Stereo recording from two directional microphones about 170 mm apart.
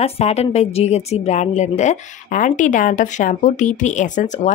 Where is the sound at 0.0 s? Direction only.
35° left (ahead or behind).